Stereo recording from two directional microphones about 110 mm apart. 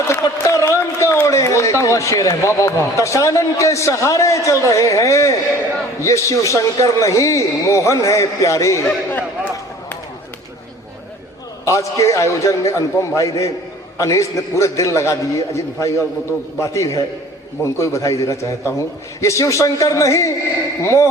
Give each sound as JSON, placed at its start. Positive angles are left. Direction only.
{"t": 0.1, "sound": "a sound", "side_deg": 30}
{"t": 1.8, "sound": "a man's voice", "side_deg": 30}
{"t": 9.0, "sound": "speech", "side_deg": 15}
{"t": 11.6, "sound": "a man's voice", "side_deg": 30}